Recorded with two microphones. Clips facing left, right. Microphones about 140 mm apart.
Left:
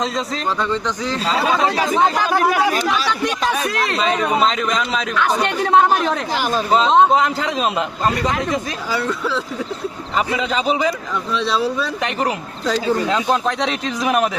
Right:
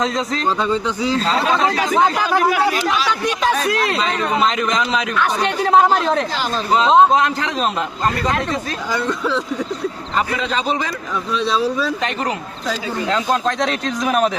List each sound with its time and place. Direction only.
0.0 s a man's voice: centre (ahead or behind)
0.4 s a man's voice: 15° right (ahead or behind)
1.2 s a man's voice: 5° left (ahead or behind)
2.5 s speech: 40° left (ahead or behind)
4.0 s speech: 10° left (ahead or behind)
4.4 s a man's voice: centre (ahead or behind)
6.3 s speech: 15° left (ahead or behind)
6.7 s a man's voice: centre (ahead or behind)
11.3 s a man's voice: centre (ahead or behind)
13.1 s a man's voice: 10° left (ahead or behind)